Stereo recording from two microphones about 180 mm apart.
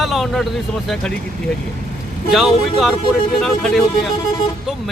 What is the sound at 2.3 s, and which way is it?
Speech, centre (ahead or behind).